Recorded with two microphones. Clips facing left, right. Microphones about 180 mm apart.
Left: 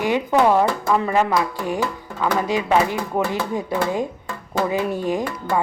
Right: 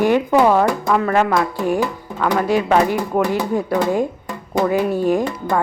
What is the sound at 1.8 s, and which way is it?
Music, 15° right (ahead or behind).